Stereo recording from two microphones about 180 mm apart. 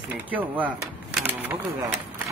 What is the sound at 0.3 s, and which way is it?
Speech, 10° right (ahead or behind).